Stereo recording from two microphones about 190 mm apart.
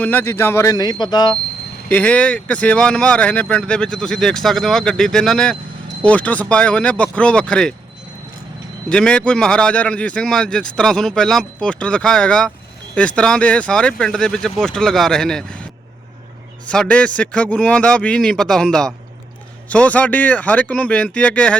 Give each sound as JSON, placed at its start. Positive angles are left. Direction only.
{"t": 0.0, "sound": "speech", "side_deg": 10}
{"t": 1.9, "sound": "speech", "side_deg": 5}
{"t": 8.9, "sound": "speech", "side_deg": 5}
{"t": 16.6, "sound": "speech", "side_deg": 5}